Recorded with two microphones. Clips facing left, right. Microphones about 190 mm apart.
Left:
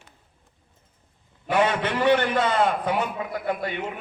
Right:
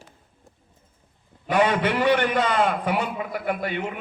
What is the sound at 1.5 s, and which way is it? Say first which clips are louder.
A man's voice: right 2 dB; 15° right (ahead or behind).